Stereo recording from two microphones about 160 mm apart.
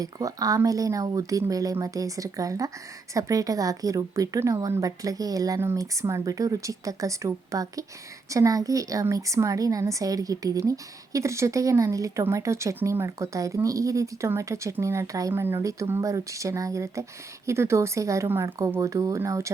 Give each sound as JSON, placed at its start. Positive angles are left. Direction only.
{"t": 0.0, "sound": "speech", "side_deg": -20}